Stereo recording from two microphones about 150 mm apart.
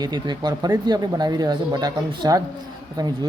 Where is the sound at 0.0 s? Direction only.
30° right (ahead or behind).